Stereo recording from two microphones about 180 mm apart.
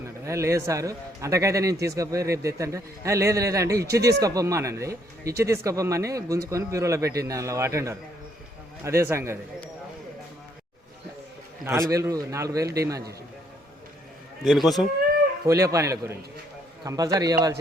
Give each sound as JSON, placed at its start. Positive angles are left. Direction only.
{"t": 0.3, "sound": "a man's voice", "side_deg": -15}
{"t": 11.6, "sound": "a man's voice", "side_deg": -15}
{"t": 14.4, "sound": "speech", "side_deg": 0}
{"t": 15.4, "sound": "a man's voice", "side_deg": -15}